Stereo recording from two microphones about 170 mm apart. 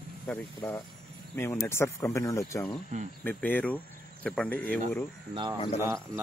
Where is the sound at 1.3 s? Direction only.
15° left (ahead or behind).